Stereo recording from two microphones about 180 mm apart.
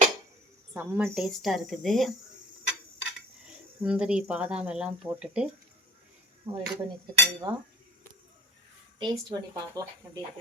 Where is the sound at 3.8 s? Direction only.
5° right (ahead or behind).